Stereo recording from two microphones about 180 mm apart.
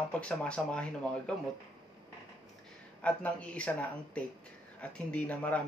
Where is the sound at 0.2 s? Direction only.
5° left (ahead or behind).